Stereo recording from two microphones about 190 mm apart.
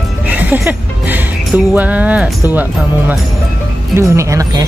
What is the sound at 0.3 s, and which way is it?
Speech, 10° right (ahead or behind).